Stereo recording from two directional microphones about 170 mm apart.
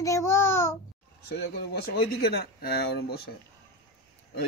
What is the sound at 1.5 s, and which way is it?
Speech, 70° left (ahead or behind).